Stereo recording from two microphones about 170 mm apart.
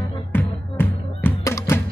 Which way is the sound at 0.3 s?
10° left (ahead or behind).